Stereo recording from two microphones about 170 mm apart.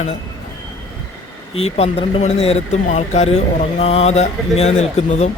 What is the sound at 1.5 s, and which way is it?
Speech, 35° left (ahead or behind).